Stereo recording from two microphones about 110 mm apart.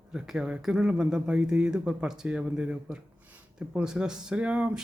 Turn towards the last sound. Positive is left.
turn(degrees=-10)  # may be behind; listen again after turning